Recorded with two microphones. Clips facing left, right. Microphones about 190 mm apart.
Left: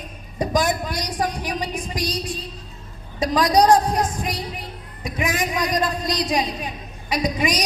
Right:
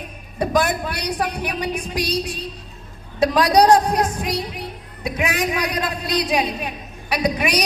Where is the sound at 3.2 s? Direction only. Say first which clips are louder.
Right 2 dB; 65° right (ahead or behind).